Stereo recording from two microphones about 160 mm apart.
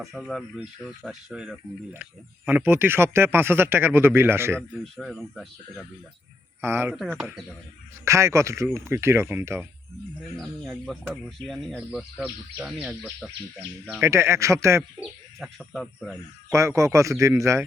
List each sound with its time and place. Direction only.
0.0 s speech: centre (ahead or behind)
4.8 s speech: centre (ahead or behind)
6.6 s speech: 15° right (ahead or behind)
6.9 s speech: centre (ahead or behind)
8.0 s speech: 20° right (ahead or behind)
10.3 s speech: centre (ahead or behind)
14.0 s speech: 15° right (ahead or behind)
15.0 s speech: centre (ahead or behind)
16.5 s speech: 20° right (ahead or behind)